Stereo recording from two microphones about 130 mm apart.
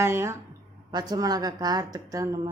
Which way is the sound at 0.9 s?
30° right (ahead or behind).